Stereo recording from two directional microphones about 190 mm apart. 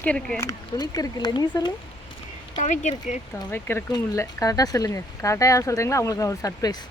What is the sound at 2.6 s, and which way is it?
Speech, 40° left (ahead or behind).